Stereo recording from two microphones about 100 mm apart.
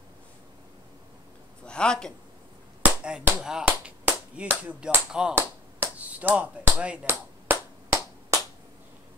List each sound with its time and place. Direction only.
1.7 s a man's voice: 10° left (ahead or behind)
2.8 s speech: 10° right (ahead or behind)
5.8 s finger snapping: 15° right (ahead or behind)
7.1 s finger snapping: 20° right (ahead or behind)